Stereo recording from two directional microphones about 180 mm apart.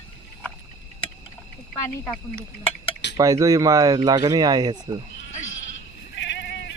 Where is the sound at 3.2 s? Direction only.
20° right (ahead or behind).